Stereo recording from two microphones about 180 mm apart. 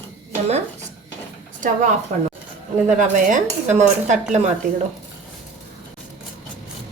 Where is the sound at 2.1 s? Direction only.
45° right (ahead or behind).